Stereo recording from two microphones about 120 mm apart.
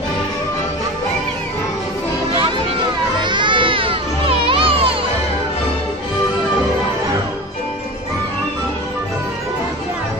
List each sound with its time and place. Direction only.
3.2 s baby cry: 40° right (ahead or behind)